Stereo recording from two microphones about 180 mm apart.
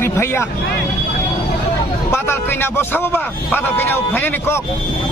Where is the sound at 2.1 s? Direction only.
15° left (ahead or behind).